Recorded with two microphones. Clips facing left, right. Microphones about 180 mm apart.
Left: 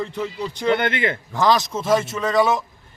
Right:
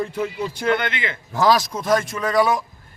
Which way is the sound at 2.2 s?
25° left (ahead or behind).